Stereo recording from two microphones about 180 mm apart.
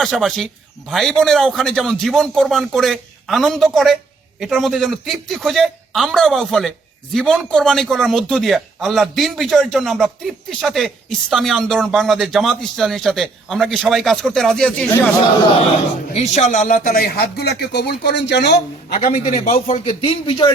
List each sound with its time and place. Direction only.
0.0 s a man's voice: centre (ahead or behind)
16.1 s a man's voice: 40° left (ahead or behind); by 18.9 s 70° left (ahead or behind)
19.5 s speech: 30° left (ahead or behind)